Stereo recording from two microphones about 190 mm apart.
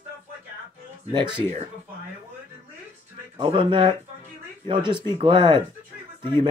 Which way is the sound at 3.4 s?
25° right (ahead or behind).